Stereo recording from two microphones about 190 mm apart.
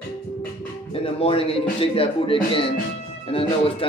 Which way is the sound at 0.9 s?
30° left (ahead or behind).